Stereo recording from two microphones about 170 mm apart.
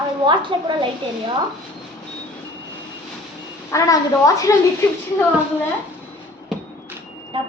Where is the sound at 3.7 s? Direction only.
20° left (ahead or behind).